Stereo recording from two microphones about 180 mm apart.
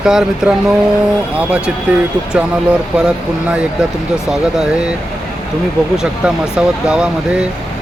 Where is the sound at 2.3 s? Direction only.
5° right (ahead or behind).